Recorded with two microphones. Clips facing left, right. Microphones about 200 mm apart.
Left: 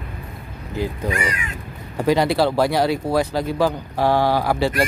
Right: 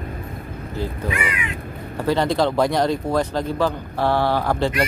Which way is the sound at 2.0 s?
10° left (ahead or behind).